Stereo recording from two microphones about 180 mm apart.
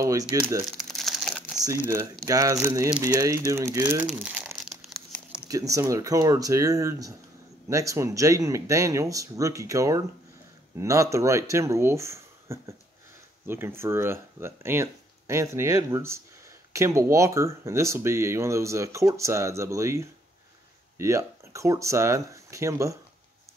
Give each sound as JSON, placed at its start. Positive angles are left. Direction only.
{"t": 0.0, "sound": "speech", "side_deg": -20}
{"t": 0.7, "sound": "crumpling", "side_deg": 0}
{"t": 2.2, "sound": "speech", "side_deg": -20}
{"t": 5.5, "sound": "speech", "side_deg": -20}